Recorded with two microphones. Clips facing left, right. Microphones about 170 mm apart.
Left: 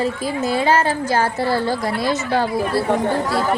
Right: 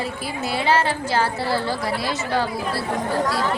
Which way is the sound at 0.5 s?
45° left (ahead or behind).